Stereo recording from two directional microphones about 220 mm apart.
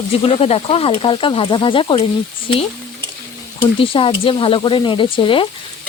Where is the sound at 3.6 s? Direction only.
25° left (ahead or behind).